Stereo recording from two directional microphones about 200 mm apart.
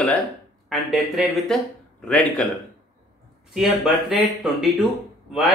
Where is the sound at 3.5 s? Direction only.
Centre (ahead or behind).